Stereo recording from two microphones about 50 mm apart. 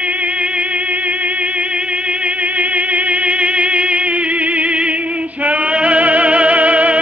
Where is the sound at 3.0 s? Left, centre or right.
Right.